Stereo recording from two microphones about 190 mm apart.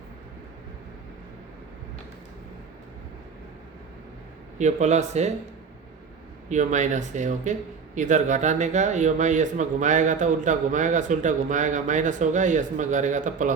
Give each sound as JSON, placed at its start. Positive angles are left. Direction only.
{"t": 4.5, "sound": "speech", "side_deg": -40}
{"t": 6.5, "sound": "speech", "side_deg": -40}